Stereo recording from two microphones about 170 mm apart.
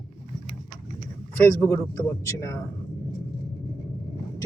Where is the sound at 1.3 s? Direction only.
15° left (ahead or behind).